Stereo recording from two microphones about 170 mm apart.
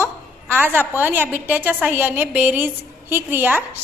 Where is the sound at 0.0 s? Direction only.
10° right (ahead or behind).